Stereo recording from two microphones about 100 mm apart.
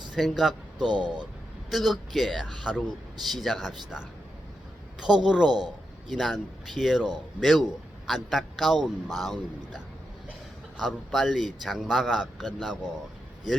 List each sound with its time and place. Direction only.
0.1 s speech: centre (ahead or behind)
0.9 s speech: 50° right (ahead or behind)
1.7 s a man's voice: centre (ahead or behind)
5.5 s speech: 45° right (ahead or behind)
6.1 s a man's voice: centre (ahead or behind)